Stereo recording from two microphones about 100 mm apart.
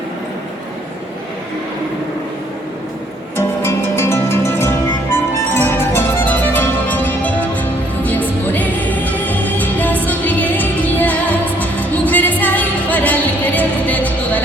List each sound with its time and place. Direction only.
3.3 s music: 25° left (ahead or behind)